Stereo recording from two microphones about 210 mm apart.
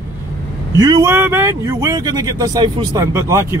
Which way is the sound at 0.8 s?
20° right (ahead or behind).